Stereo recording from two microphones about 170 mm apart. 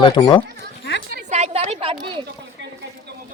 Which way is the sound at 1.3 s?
40° right (ahead or behind).